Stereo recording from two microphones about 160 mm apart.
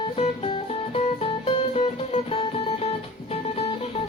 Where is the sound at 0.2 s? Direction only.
35° left (ahead or behind).